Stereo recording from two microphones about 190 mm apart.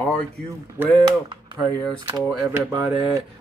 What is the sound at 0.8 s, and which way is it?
Speech, 25° right (ahead or behind).